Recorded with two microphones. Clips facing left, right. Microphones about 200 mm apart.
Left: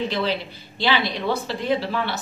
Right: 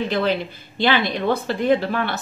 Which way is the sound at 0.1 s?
50° right (ahead or behind).